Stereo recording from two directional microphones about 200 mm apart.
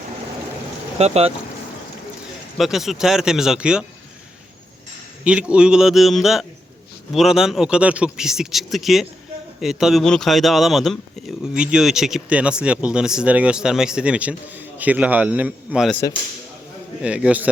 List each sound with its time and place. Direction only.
0.9 s speech: 30° right (ahead or behind)
2.6 s speech: centre (ahead or behind)
5.2 s speech: 5° right (ahead or behind)
15.9 s speech: 15° left (ahead or behind)
17.0 s speech: 5° right (ahead or behind)